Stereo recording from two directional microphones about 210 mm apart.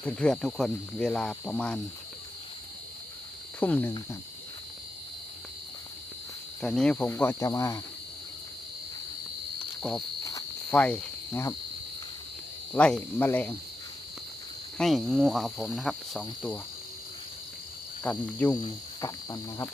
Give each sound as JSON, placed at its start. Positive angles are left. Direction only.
{"t": 0.0, "sound": "speech", "side_deg": 5}
{"t": 3.6, "sound": "speech", "side_deg": 10}
{"t": 6.6, "sound": "speech", "side_deg": 5}
{"t": 10.7, "sound": "cricket", "side_deg": 5}
{"t": 12.7, "sound": "speech", "side_deg": 5}
{"t": 14.8, "sound": "speech", "side_deg": 0}
{"t": 18.0, "sound": "speech", "side_deg": 5}
{"t": 18.5, "sound": "speech", "side_deg": 20}